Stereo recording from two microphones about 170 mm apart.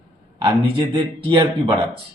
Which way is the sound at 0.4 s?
25° right (ahead or behind).